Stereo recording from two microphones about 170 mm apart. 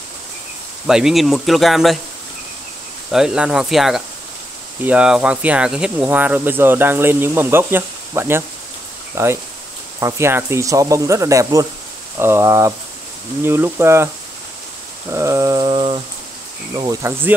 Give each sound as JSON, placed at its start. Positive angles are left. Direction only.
{"t": 0.8, "sound": "speech", "side_deg": -5}
{"t": 3.1, "sound": "speech", "side_deg": -5}
{"t": 15.0, "sound": "mantra", "side_deg": -15}
{"t": 16.7, "sound": "speech", "side_deg": -25}